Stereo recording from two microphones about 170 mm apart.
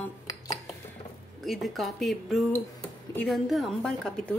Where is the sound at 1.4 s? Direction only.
Centre (ahead or behind).